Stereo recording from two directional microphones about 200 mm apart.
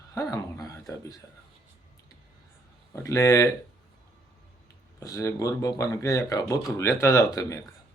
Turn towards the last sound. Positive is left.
turn(degrees=15)  # may be behind; listen again after turning